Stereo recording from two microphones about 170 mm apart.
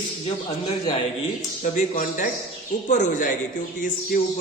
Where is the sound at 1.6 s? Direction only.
50° left (ahead or behind).